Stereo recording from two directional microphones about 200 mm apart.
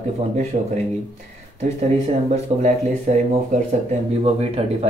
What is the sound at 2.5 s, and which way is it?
Speech, 30° right (ahead or behind).